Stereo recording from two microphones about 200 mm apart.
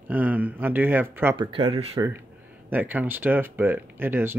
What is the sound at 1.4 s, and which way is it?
Speech, 25° right (ahead or behind).